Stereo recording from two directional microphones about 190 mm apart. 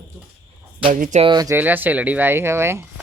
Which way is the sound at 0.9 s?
45° right (ahead or behind).